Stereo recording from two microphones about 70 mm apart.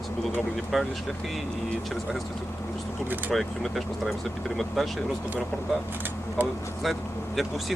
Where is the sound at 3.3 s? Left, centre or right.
Centre.